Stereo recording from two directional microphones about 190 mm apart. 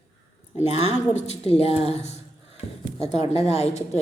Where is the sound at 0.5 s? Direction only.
35° left (ahead or behind).